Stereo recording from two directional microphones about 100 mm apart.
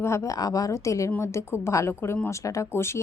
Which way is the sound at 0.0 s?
30° left (ahead or behind).